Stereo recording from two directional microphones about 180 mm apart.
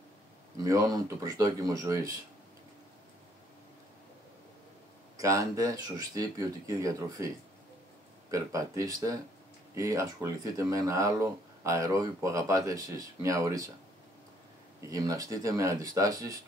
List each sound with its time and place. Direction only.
0.6 s speech: 20° right (ahead or behind)
5.1 s speech: 15° right (ahead or behind)
14.9 s speech: 20° right (ahead or behind)